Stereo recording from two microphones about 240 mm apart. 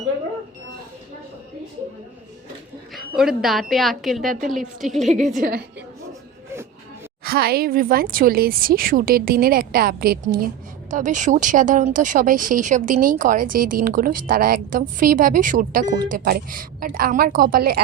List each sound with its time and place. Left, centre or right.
2.9 s a woman's voice: centre
4.3 s speech: right
4.5 s a woman's voice: centre
5.0 s speech: right
7.3 s speech: right